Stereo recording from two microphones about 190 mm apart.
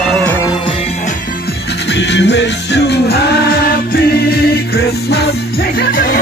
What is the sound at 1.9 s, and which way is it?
Music, 65° left (ahead or behind).